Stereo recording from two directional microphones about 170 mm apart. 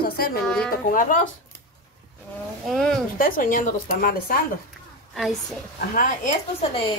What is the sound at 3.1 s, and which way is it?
Speech, 55° left (ahead or behind).